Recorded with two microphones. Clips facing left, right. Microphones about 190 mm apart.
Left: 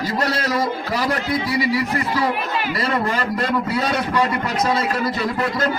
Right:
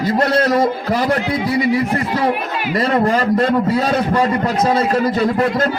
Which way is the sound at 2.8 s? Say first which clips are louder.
Right 9 dB; 35° right (ahead or behind).